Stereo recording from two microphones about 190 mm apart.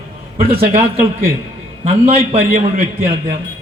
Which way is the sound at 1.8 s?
30° right (ahead or behind).